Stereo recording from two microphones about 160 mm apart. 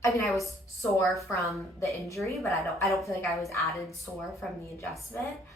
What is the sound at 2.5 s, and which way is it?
Speech, 20° left (ahead or behind).